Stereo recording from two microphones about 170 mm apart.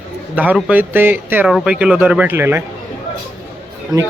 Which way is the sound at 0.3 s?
10° right (ahead or behind).